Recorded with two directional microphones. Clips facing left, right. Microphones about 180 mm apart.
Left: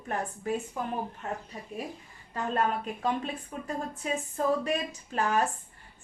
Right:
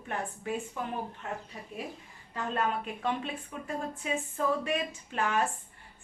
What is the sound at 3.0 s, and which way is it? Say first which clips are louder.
A woman's voice: left 2 dB; 40° left (ahead or behind).